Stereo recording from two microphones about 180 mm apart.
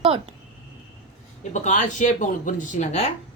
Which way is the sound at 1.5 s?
40° left (ahead or behind).